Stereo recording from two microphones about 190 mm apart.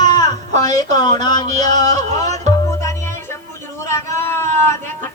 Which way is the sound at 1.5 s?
40° right (ahead or behind).